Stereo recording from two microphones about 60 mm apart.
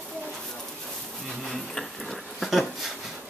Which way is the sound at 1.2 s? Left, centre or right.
Centre.